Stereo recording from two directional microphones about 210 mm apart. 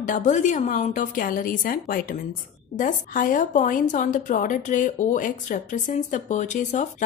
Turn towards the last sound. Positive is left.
turn(degrees=35)  # may be behind; listen again after turning